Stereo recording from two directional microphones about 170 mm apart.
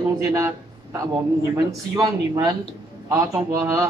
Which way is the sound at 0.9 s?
20° right (ahead or behind).